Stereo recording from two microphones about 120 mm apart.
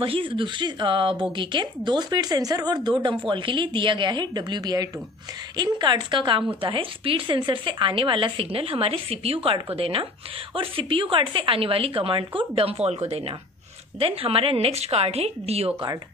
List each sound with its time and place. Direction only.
0.0 s a woman's voice: 45° right (ahead or behind)